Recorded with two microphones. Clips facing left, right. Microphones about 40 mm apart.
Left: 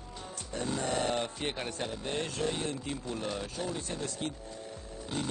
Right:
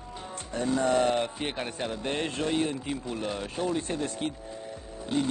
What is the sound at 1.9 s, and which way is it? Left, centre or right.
Speech, right.